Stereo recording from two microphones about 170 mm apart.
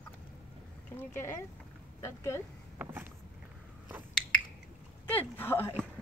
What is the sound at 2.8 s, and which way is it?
Vehicle, 10° right (ahead or behind).